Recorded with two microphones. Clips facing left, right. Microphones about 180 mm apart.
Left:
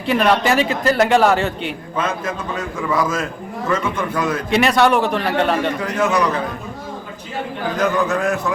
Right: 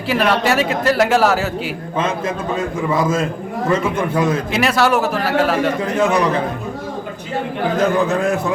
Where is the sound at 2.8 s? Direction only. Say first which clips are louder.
Right 2 dB; 25° right (ahead or behind).